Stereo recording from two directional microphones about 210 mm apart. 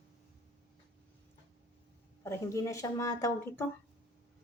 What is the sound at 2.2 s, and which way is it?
Speech, 15° left (ahead or behind).